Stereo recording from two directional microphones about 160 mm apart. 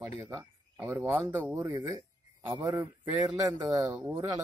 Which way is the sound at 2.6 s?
20° right (ahead or behind).